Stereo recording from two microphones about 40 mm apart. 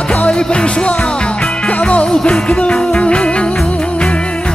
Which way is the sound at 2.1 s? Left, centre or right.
Centre.